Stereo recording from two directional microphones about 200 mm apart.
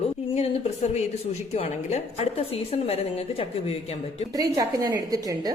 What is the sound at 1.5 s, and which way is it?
A woman's voice, 30° left (ahead or behind).